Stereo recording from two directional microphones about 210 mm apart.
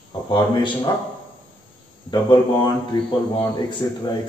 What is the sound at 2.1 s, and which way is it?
A man's voice, 20° left (ahead or behind).